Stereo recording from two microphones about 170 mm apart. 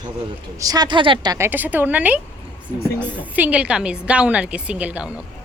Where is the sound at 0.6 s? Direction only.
20° right (ahead or behind).